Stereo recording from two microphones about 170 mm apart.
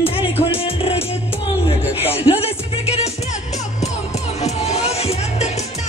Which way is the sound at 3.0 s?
40° left (ahead or behind).